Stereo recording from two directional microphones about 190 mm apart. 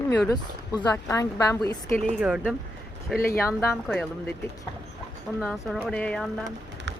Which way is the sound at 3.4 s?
15° left (ahead or behind).